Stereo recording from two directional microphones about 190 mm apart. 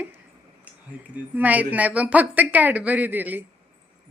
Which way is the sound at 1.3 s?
10° right (ahead or behind).